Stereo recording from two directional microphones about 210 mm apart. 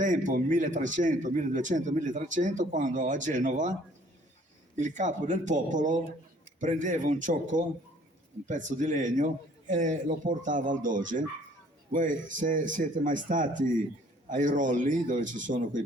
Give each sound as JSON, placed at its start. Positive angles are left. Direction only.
{"t": 0.0, "sound": "a man's voice", "side_deg": -35}
{"t": 4.8, "sound": "a man's voice", "side_deg": -35}